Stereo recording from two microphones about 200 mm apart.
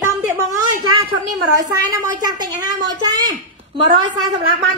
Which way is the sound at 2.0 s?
20° right (ahead or behind).